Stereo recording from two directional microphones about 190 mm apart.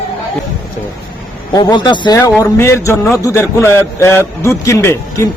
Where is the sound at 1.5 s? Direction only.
20° left (ahead or behind).